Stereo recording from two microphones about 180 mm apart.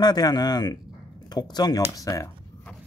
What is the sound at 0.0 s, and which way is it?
Speech, 20° left (ahead or behind).